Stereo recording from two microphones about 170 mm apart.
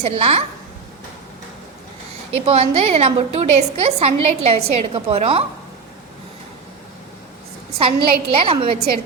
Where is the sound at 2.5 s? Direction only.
35° right (ahead or behind).